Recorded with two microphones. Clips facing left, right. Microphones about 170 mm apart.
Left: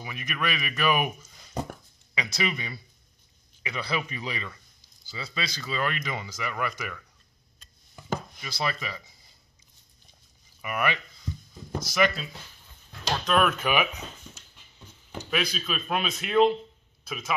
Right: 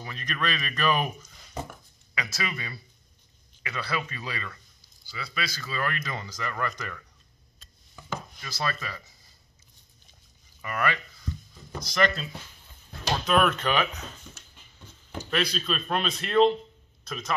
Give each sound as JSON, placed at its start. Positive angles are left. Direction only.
{"t": 0.0, "sound": "speech", "side_deg": 10}
{"t": 8.4, "sound": "speech", "side_deg": 15}
{"t": 10.6, "sound": "a sound", "side_deg": 15}
{"t": 11.9, "sound": "speech", "side_deg": 5}
{"t": 13.1, "sound": "speech", "side_deg": -5}